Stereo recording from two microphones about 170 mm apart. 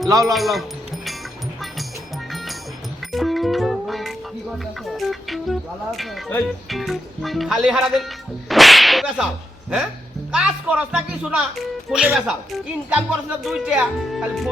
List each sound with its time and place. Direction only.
0.1 s speech: 20° right (ahead or behind)
0.3 s speech: centre (ahead or behind)
3.1 s music: centre (ahead or behind)
4.9 s speech: centre (ahead or behind)
8.4 s whip: centre (ahead or behind)
10.3 s speech: 5° right (ahead or behind)